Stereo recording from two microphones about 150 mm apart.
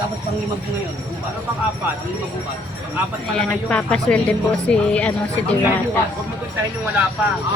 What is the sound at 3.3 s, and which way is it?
Speech, 5° left (ahead or behind).